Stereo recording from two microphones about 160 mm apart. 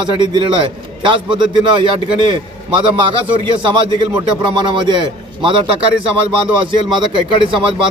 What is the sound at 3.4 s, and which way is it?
A man's voice, 30° right (ahead or behind).